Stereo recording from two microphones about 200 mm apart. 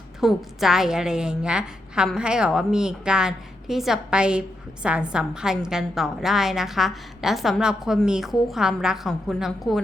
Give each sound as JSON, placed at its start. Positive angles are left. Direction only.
{"t": 0.2, "sound": "a woman's voice", "side_deg": 0}